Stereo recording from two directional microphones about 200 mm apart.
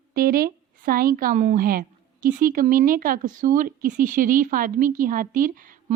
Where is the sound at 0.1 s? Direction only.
45° right (ahead or behind).